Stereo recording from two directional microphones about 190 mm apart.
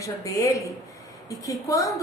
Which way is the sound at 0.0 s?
15° left (ahead or behind).